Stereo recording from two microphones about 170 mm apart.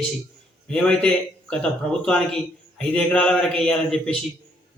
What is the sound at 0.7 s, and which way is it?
Speech, 5° left (ahead or behind).